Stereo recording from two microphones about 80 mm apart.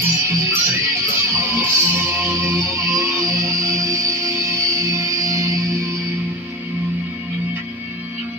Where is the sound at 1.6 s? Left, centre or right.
Right.